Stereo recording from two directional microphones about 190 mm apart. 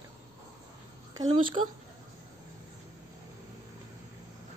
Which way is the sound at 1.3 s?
25° right (ahead or behind).